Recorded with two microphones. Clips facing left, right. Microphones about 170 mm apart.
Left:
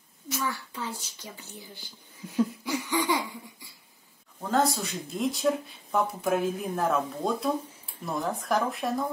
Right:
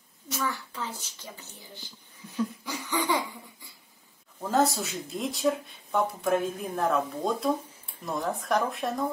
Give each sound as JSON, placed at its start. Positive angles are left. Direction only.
{"t": 0.4, "sound": "a child's voice", "side_deg": 15}
{"t": 2.3, "sound": "laughter", "side_deg": 15}
{"t": 4.4, "sound": "speech", "side_deg": -5}